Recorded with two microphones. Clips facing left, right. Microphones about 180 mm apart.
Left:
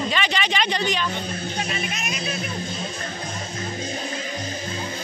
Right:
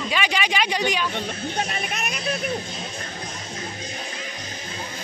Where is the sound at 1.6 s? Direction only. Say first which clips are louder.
Left 1 dB; 55° right (ahead or behind).